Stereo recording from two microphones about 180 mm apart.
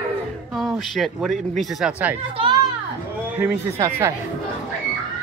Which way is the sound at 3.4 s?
15° right (ahead or behind).